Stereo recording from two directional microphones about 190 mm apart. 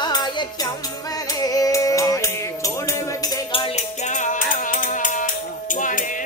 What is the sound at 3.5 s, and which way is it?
Music, 35° left (ahead or behind).